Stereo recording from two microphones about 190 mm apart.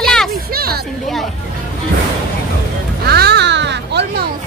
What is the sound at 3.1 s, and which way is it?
Music, 60° right (ahead or behind).